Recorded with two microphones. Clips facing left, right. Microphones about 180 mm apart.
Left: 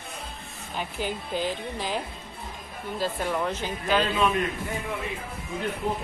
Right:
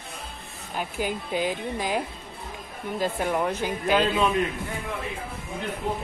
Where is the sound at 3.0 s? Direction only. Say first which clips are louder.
Right 2 dB; 10° right (ahead or behind).